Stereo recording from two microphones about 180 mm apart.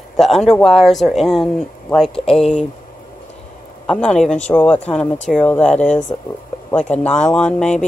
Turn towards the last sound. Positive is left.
turn(degrees=5)  # may be behind; listen again after turning